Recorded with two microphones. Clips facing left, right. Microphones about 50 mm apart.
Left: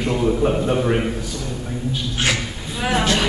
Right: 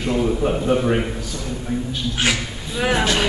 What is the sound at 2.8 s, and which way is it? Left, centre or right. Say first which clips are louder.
Speech: even; centre.